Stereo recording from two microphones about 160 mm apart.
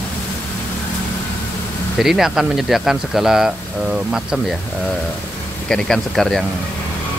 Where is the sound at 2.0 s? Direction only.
5° right (ahead or behind).